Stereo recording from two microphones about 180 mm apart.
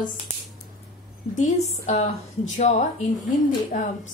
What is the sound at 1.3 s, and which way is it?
A woman's voice, 40° left (ahead or behind).